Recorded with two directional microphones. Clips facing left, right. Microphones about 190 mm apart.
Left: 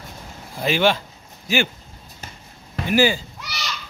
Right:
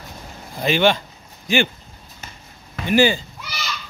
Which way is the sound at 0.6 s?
5° left (ahead or behind).